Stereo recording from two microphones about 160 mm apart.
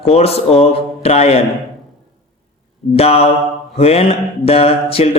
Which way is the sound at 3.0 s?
40° left (ahead or behind).